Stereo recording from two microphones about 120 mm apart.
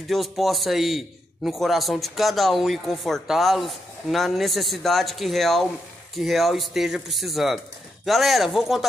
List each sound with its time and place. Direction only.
0.1 s a man's voice: centre (ahead or behind)